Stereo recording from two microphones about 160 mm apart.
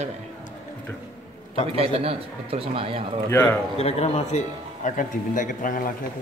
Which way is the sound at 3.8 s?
40° left (ahead or behind).